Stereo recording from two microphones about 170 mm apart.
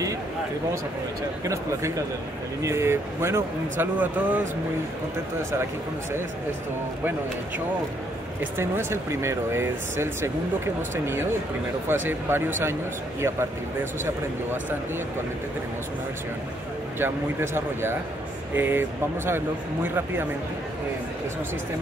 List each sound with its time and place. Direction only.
1.4 s speech: 20° right (ahead or behind)
8.5 s speech: 15° right (ahead or behind)
17.0 s speech: 15° right (ahead or behind)